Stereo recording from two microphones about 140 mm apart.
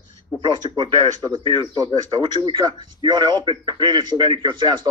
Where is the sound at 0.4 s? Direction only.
35° right (ahead or behind).